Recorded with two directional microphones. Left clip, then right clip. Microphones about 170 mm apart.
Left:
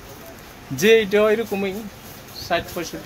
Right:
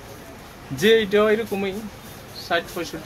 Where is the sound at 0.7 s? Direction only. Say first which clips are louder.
Left 2 dB; 35° left (ahead or behind).